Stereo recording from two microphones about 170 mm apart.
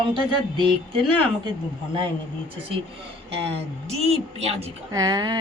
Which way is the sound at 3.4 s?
35° right (ahead or behind).